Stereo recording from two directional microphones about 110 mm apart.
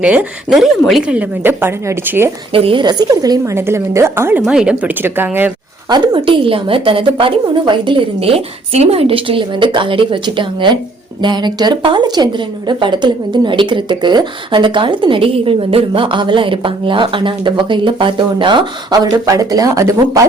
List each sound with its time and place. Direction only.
0.0 s speech: 10° right (ahead or behind)
1.6 s a woman's voice: 20° right (ahead or behind)
2.5 s speech: 60° right (ahead or behind)
2.8 s a woman's voice: 35° right (ahead or behind)
3.5 s a woman's voice: 25° right (ahead or behind)
4.4 s speech: 5° right (ahead or behind)
5.9 s speech: 45° right (ahead or behind)